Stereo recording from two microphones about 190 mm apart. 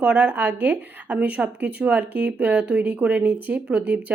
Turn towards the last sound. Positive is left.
turn(degrees=-5)  # may be behind; listen again after turning